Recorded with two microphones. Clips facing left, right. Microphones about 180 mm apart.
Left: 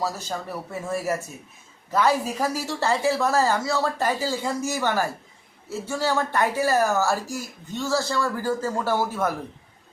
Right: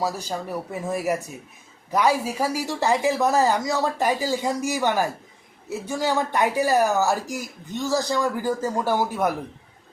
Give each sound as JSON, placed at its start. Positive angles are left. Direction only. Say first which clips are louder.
{"t": 0.0, "sound": "a woman's voice", "louder": "right 2 dB", "side_deg": -15}